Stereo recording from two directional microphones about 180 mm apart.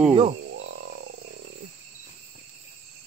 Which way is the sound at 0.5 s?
90° right.